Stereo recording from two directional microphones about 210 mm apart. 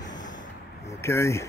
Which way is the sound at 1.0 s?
15° left (ahead or behind).